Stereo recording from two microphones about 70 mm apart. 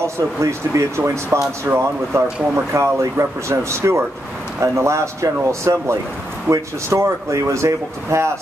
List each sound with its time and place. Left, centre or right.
0.0 s speech: right